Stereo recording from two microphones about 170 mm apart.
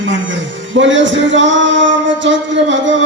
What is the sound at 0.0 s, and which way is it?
Music, 90° right.